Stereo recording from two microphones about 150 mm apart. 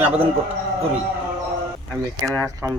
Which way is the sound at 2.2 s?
20° right (ahead or behind).